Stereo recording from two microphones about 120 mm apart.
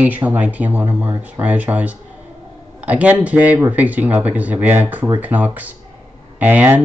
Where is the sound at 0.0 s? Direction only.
15° right (ahead or behind).